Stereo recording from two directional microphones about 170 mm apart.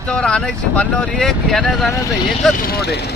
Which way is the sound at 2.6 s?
65° left (ahead or behind).